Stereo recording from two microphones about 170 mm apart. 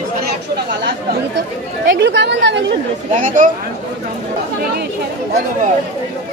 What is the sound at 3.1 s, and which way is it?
Speech, 50° right (ahead or behind).